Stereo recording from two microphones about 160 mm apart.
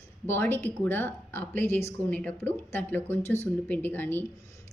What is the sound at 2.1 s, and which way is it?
Speech, 10° left (ahead or behind).